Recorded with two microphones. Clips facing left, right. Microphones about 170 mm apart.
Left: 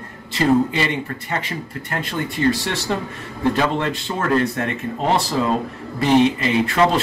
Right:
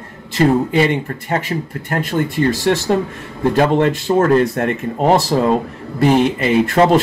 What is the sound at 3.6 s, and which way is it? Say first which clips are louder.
Speech: right 7 dB; 50° right (ahead or behind).